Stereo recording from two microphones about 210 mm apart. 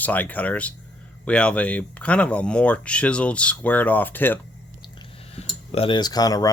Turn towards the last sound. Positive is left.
turn(degrees=15)  # may be behind; listen again after turning